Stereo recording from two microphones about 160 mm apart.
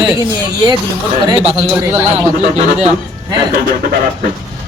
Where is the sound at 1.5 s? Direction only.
35° right (ahead or behind).